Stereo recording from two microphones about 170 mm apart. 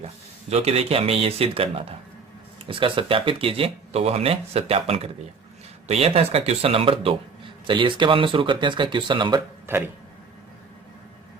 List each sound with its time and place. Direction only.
0.5 s speech: 35° right (ahead or behind)
9.6 s speech: 10° right (ahead or behind)